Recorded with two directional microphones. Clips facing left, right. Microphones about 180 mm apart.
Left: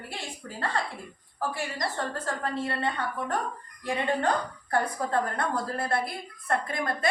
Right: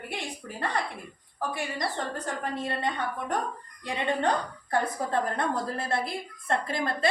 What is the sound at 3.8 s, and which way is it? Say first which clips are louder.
A woman's voice: left 1 dB; 20° right (ahead or behind).